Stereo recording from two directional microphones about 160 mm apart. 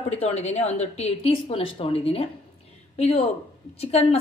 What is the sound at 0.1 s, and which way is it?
A woman's voice, 40° left (ahead or behind).